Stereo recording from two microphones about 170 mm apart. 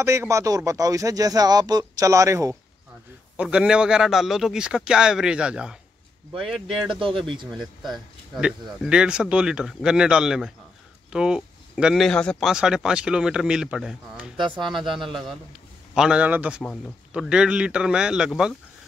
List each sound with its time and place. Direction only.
0.0 s a man's voice: 15° right (ahead or behind)
3.3 s a man's voice: 5° right (ahead or behind)